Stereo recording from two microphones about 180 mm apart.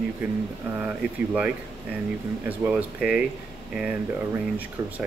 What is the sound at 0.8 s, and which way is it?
Speech, 5° right (ahead or behind).